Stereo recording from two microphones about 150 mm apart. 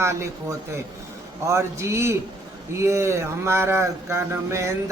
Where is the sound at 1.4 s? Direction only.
20° right (ahead or behind).